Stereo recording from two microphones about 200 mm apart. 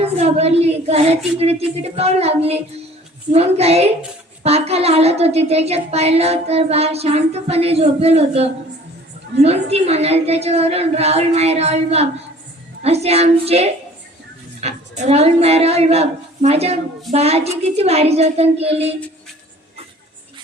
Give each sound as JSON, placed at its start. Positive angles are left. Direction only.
{"t": 0.0, "sound": "a woman's voice", "side_deg": -30}